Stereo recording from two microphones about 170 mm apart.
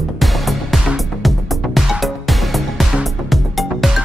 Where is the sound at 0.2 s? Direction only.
Centre (ahead or behind).